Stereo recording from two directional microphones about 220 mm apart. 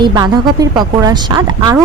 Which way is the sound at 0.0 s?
15° right (ahead or behind).